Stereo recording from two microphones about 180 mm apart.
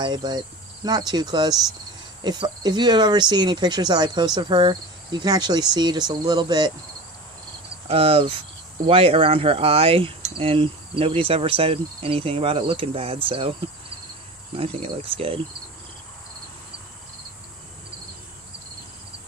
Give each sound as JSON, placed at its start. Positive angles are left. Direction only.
{"t": 0.0, "sound": "speech", "side_deg": -25}
{"t": 7.9, "sound": "speech", "side_deg": -35}
{"t": 14.5, "sound": "speech", "side_deg": -30}